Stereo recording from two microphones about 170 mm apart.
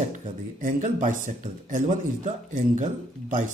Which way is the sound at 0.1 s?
50° right (ahead or behind).